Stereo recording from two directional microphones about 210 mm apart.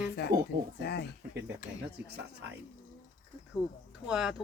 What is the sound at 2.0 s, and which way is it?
Speech, 55° right (ahead or behind).